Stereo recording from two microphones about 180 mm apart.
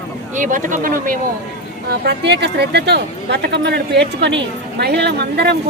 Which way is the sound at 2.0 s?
70° right (ahead or behind).